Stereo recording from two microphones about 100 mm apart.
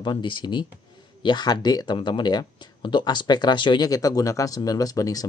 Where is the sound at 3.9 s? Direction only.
35° left (ahead or behind).